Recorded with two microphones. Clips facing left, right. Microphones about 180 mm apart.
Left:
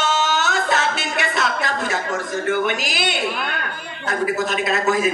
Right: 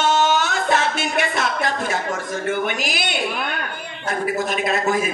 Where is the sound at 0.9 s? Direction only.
50° right (ahead or behind).